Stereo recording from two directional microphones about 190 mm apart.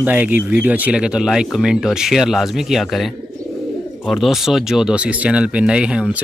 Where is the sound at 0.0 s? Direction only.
10° right (ahead or behind).